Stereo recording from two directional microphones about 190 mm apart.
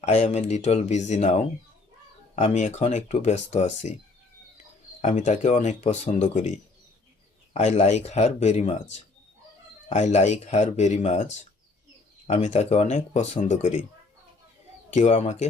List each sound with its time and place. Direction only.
0.0 s speech: 35° left (ahead or behind)
5.0 s speech: 40° left (ahead or behind)
7.5 s speech: 35° left (ahead or behind)
12.3 s speech: 35° left (ahead or behind)
14.9 s speech: 40° left (ahead or behind)